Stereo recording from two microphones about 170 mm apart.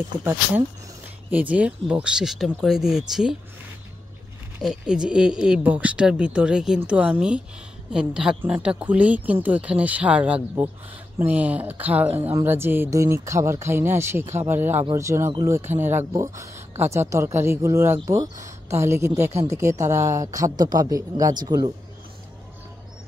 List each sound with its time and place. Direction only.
0.2 s speech: 10° right (ahead or behind)
4.6 s speech: 5° right (ahead or behind); by 21.7 s 25° right (ahead or behind)